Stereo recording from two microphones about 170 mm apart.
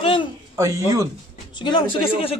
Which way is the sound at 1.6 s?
30° left (ahead or behind).